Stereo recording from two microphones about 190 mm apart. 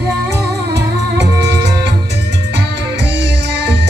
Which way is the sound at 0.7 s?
65° right (ahead or behind).